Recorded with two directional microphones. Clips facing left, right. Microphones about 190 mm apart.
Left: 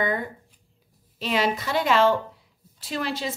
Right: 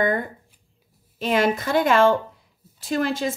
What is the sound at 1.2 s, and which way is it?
A woman's voice, 50° right (ahead or behind).